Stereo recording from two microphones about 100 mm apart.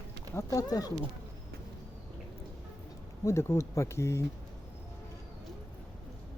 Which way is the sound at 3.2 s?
30° left (ahead or behind).